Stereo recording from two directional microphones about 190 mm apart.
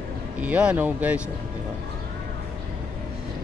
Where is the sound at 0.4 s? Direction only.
5° right (ahead or behind).